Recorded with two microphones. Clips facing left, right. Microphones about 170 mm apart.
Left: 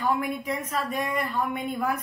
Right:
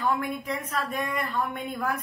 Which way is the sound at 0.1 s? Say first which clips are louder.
Left 2 dB; centre (ahead or behind).